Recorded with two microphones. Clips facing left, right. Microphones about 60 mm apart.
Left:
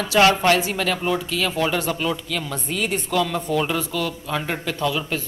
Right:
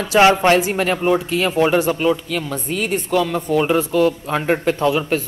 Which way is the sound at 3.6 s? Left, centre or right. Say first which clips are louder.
Right 11 dB; right.